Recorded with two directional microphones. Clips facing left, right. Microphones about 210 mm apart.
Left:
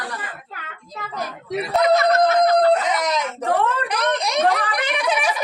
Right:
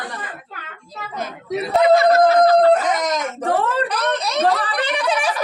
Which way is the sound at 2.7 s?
45° right (ahead or behind).